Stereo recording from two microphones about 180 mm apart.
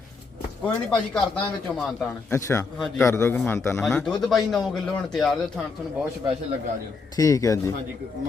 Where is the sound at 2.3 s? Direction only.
15° left (ahead or behind).